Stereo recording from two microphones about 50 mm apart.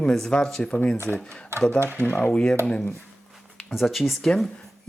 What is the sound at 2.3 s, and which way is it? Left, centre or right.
Speech, centre.